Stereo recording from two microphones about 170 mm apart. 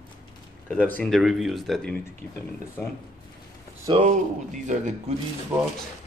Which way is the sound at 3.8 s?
35° right (ahead or behind).